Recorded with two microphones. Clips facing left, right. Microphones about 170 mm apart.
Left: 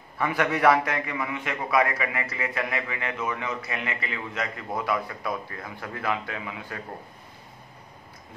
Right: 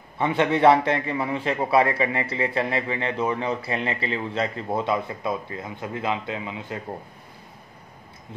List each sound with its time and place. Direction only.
0.2 s a man's voice: 25° right (ahead or behind)